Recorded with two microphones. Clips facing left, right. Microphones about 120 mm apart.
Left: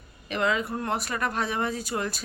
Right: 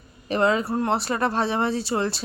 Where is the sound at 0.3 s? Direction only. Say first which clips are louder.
Right 5 dB; 35° right (ahead or behind).